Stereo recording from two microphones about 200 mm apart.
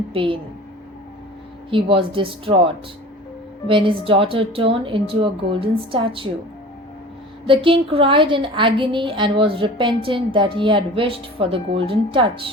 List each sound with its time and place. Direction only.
0.1 s a woman's voice: 25° right (ahead or behind)
1.7 s a woman's voice: 25° right (ahead or behind)
3.7 s a woman's voice: 25° right (ahead or behind)
7.4 s a woman's voice: 25° right (ahead or behind)